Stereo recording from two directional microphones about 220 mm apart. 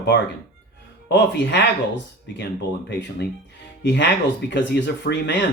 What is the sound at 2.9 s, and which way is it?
Speech, 50° left (ahead or behind).